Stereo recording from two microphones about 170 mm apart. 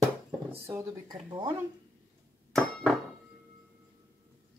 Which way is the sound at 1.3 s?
25° right (ahead or behind).